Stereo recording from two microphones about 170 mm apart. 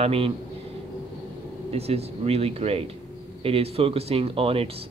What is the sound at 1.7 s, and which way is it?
A man's voice, 35° right (ahead or behind).